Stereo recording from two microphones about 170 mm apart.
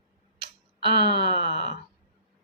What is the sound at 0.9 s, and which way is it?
Speech, 30° right (ahead or behind).